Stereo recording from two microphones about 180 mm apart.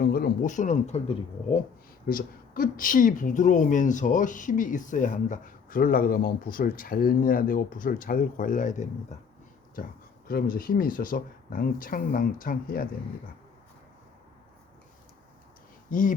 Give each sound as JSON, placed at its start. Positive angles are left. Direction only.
{"t": 0.0, "sound": "speech", "side_deg": 60}
{"t": 2.0, "sound": "speech", "side_deg": 50}
{"t": 15.9, "sound": "speech", "side_deg": 45}